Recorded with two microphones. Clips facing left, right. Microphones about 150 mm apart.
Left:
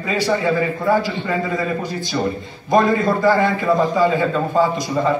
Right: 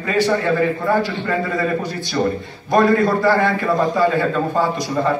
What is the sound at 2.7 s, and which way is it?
A man's voice, 15° left (ahead or behind).